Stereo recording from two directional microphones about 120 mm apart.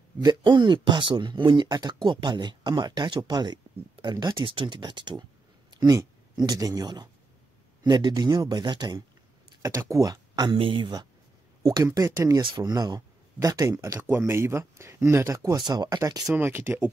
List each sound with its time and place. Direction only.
0.2 s speech: 40° right (ahead or behind)
9.6 s speech: 25° right (ahead or behind)
11.6 s speech: 30° right (ahead or behind)
16.3 s speech: 20° right (ahead or behind)